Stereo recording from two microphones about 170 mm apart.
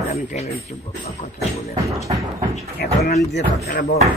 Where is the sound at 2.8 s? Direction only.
70° left (ahead or behind).